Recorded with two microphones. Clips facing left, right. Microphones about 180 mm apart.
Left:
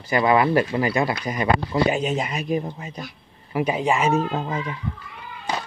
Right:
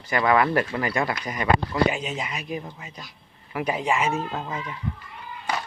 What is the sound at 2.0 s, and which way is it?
Speech, 45° left (ahead or behind).